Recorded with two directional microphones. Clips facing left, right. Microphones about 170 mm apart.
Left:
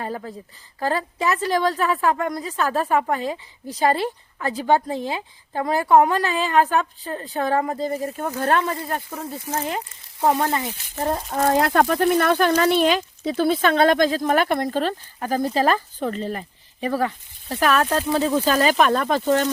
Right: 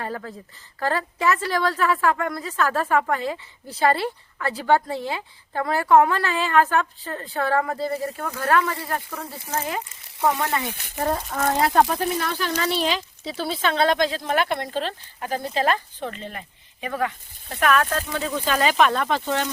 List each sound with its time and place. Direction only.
0.0 s a woman's voice: 15° left (ahead or behind)
11.6 s speech: 65° left (ahead or behind); by 19.5 s 45° left (ahead or behind)